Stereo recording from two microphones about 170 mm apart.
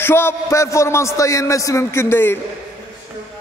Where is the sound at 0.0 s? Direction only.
15° left (ahead or behind).